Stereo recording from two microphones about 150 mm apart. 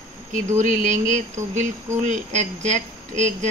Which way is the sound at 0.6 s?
55° right (ahead or behind).